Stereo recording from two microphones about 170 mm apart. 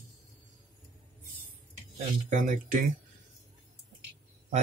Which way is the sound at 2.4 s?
50° right (ahead or behind).